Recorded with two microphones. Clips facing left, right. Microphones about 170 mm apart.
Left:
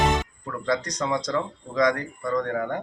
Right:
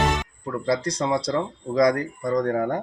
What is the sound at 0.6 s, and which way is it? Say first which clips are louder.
Speech: right 2 dB; 30° right (ahead or behind).